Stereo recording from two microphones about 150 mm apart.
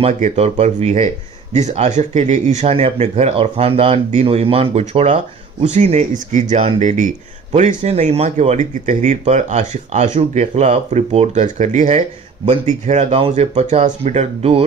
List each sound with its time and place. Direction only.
0.2 s speech: 45° right (ahead or behind)